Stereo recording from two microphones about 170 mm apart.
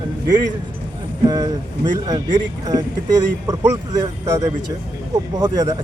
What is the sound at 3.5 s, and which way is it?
Speech, 20° right (ahead or behind).